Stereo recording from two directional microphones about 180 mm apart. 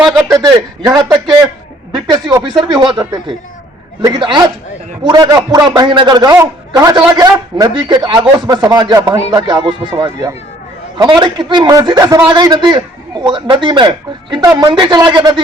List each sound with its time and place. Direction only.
0.9 s a man's voice: 25° right (ahead or behind)